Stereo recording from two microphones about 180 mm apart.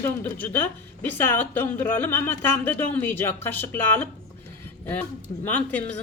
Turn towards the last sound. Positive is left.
turn(degrees=10)  # may be behind; listen again after turning